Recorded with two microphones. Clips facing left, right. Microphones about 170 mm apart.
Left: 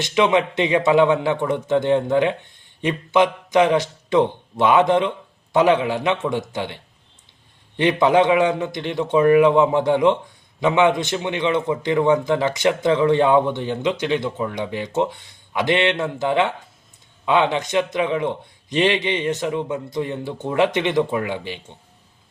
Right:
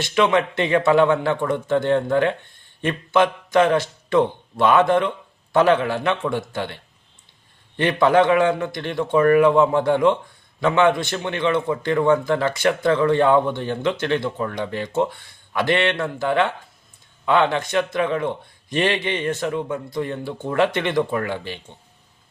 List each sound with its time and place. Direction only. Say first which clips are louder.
0.0 s a man's voice: left 1 dB; 15° left (ahead or behind)